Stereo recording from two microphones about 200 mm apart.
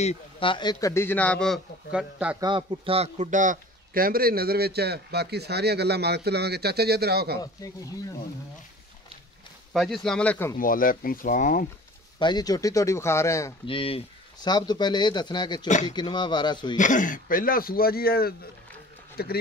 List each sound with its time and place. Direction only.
0.0 s a man's voice: 30° left (ahead or behind); by 2.3 s 5° right (ahead or behind)
2.4 s a man's voice: 25° right (ahead or behind); by 7.3 s 50° right (ahead or behind)
9.7 s speech: centre (ahead or behind)
10.6 s speech: 45° left (ahead or behind)
12.2 s a man's voice: 20° left (ahead or behind)
13.7 s speech: 25° left (ahead or behind)
16.7 s speech: 40° left (ahead or behind)